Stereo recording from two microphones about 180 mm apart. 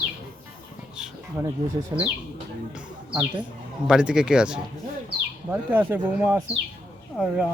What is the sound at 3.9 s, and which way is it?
Speech, 5° right (ahead or behind).